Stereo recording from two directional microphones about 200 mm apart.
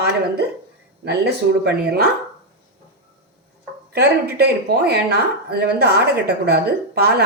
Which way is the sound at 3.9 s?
55° right (ahead or behind).